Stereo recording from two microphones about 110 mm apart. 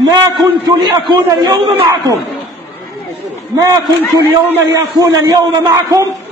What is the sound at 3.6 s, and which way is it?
A man's voice, 30° right (ahead or behind).